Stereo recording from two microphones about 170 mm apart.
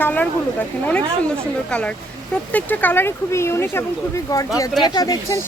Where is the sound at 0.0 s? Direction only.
10° left (ahead or behind).